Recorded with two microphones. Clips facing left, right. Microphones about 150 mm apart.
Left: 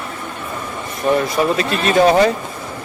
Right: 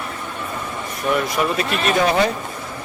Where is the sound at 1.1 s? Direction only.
30° left (ahead or behind).